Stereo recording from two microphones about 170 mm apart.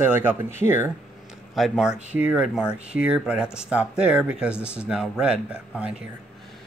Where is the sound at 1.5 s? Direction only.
Centre (ahead or behind).